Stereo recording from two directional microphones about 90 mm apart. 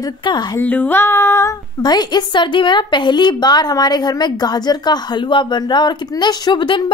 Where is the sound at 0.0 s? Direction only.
55° left (ahead or behind).